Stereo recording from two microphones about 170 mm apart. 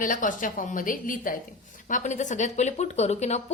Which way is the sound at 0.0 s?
50° left (ahead or behind).